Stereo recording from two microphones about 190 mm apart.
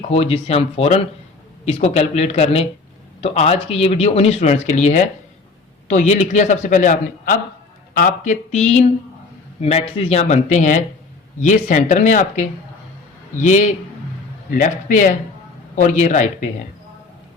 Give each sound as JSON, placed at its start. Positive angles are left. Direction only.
{"t": 0.1, "sound": "speech", "side_deg": 35}